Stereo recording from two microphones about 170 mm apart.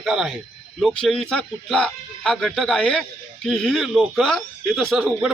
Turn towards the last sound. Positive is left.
turn(degrees=0)  # may be behind; listen again after turning